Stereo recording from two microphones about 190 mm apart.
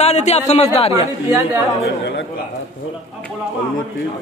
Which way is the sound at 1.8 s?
70° left (ahead or behind).